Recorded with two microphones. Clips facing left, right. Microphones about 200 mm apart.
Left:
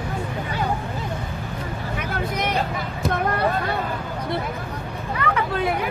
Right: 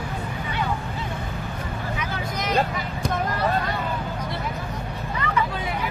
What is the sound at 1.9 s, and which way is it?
Vehicle, 60° left (ahead or behind).